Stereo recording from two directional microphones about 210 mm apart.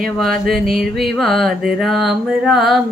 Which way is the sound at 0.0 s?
Centre (ahead or behind).